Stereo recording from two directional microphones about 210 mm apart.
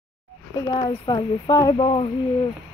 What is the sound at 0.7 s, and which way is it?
Speech, 20° left (ahead or behind).